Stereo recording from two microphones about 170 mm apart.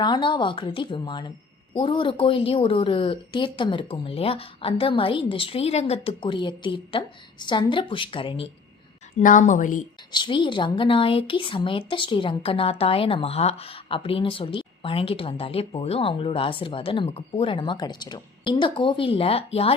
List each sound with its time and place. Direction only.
0.0 s speech: 25° left (ahead or behind)
9.2 s a woman's voice: 50° left (ahead or behind)
10.1 s speech: 30° left (ahead or behind)